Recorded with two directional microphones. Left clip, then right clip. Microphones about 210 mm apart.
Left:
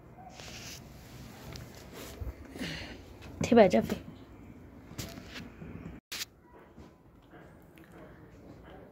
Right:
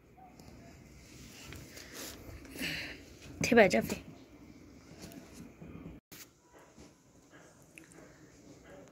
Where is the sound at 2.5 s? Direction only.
10° left (ahead or behind).